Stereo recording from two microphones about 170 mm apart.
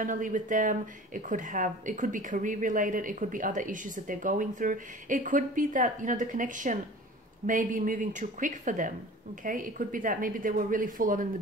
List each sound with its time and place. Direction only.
0.0 s speech: 50° right (ahead or behind)